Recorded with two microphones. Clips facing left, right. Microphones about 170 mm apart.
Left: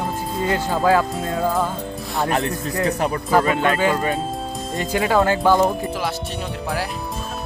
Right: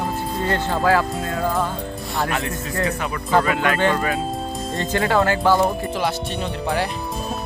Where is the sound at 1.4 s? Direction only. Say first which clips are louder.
Left 1 dB; centre (ahead or behind).